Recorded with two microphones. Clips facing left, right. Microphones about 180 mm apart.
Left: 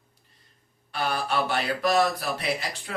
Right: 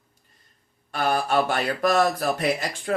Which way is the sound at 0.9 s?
45° right (ahead or behind).